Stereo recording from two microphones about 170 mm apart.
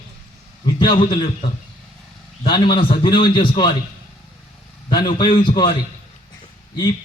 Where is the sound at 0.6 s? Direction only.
25° left (ahead or behind).